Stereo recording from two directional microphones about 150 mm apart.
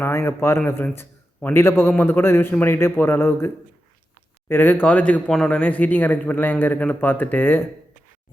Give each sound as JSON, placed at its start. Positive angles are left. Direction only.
{"t": 0.0, "sound": "a man's voice", "side_deg": 15}